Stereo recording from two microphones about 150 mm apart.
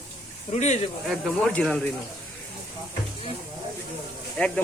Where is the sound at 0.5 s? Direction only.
50° left (ahead or behind).